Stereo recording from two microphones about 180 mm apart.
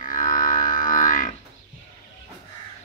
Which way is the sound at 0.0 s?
45° left (ahead or behind).